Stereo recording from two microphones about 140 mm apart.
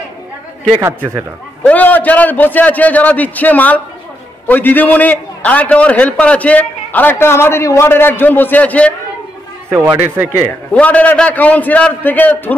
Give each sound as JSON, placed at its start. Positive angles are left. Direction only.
{"t": 0.7, "sound": "speech", "side_deg": -20}
{"t": 1.7, "sound": "a man's voice", "side_deg": 10}
{"t": 9.7, "sound": "speech", "side_deg": -15}
{"t": 10.3, "sound": "a man's voice", "side_deg": 15}